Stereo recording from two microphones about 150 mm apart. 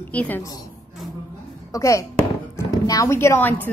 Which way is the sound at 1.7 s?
20° left (ahead or behind).